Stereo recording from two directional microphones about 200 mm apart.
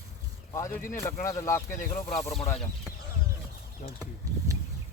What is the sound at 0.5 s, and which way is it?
Speech, 15° left (ahead or behind).